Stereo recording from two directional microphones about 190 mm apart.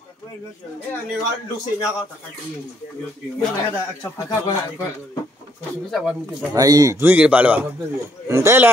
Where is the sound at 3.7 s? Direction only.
15° left (ahead or behind).